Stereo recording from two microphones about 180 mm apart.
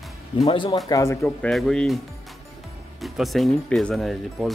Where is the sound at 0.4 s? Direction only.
30° left (ahead or behind).